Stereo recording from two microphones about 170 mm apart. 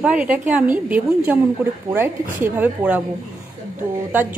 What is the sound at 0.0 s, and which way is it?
A woman's voice, 5° right (ahead or behind).